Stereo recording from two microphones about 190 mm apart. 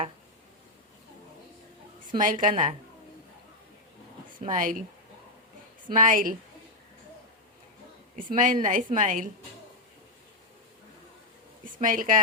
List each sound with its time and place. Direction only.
2.1 s a woman's voice: 45° right (ahead or behind)
4.4 s speech: 45° right (ahead or behind)
5.9 s a woman's voice: 45° right (ahead or behind)
8.1 s a woman's voice: 45° right (ahead or behind)
11.6 s speech: 45° right (ahead or behind)